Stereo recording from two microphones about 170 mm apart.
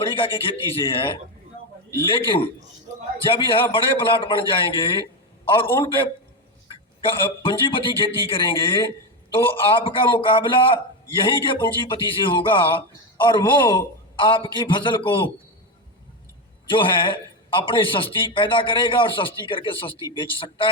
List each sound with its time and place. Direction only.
0.0 s a man's voice: 30° left (ahead or behind)
7.1 s a man's voice: 30° left (ahead or behind)
16.6 s a man's voice: 30° left (ahead or behind)